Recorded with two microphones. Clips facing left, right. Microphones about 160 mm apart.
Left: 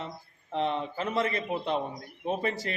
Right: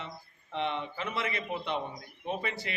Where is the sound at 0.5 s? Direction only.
35° left (ahead or behind).